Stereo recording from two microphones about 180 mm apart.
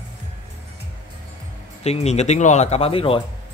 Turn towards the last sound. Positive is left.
turn(degrees=30)  # may be behind; listen again after turning